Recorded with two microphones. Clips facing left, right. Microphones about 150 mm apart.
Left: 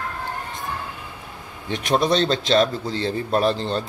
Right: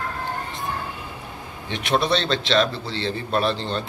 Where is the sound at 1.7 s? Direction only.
45° left (ahead or behind).